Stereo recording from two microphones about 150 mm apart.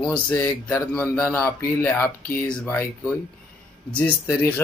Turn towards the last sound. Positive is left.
turn(degrees=10)  # may be behind; listen again after turning